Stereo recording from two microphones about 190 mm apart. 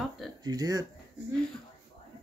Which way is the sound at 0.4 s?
20° right (ahead or behind).